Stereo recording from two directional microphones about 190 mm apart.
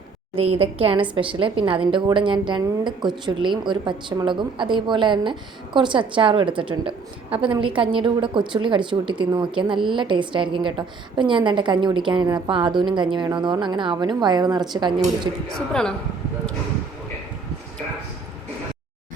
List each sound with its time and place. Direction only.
0.3 s a woman's voice: 30° right (ahead or behind)
15.4 s a man's voice: 5° left (ahead or behind)